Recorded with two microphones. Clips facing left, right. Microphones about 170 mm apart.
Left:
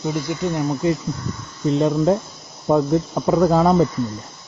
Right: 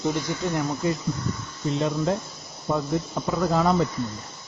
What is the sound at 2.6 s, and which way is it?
Cricket, 50° left (ahead or behind).